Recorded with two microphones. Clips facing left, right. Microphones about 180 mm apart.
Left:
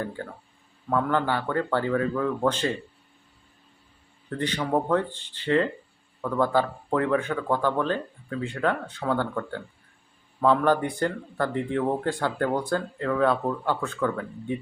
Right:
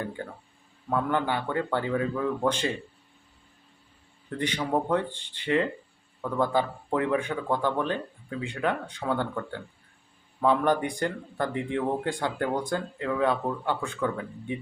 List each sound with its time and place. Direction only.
0.9 s speech: 15° right (ahead or behind)
4.4 s speech: 15° right (ahead or behind)
10.4 s speech: 15° right (ahead or behind)